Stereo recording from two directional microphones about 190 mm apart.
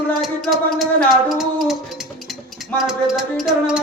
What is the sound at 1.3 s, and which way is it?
Music, centre (ahead or behind).